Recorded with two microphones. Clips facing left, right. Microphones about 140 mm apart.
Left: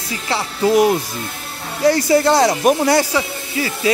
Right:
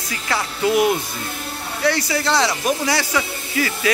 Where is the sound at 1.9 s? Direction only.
45° left (ahead or behind).